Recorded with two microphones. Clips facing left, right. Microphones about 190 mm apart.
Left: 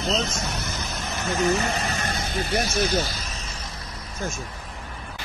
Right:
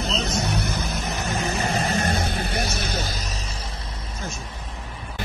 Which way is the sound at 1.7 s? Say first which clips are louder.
Right 4 dB; 45° right (ahead or behind).